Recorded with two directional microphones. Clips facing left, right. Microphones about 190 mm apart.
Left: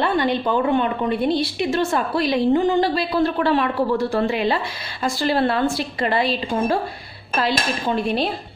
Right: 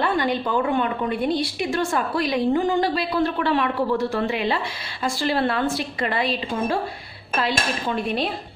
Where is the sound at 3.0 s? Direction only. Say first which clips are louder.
Left 3 dB; 35° left (ahead or behind).